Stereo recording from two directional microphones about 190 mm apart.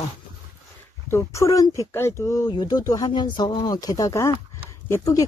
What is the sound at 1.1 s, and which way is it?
Speech, 15° left (ahead or behind).